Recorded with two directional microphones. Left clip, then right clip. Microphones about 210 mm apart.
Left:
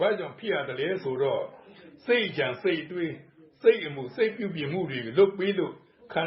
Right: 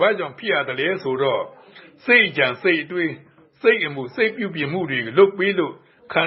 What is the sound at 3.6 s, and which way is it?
A man's voice, 20° right (ahead or behind).